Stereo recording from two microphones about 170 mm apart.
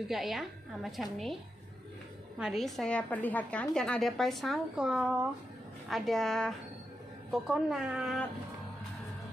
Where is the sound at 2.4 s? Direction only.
Centre (ahead or behind).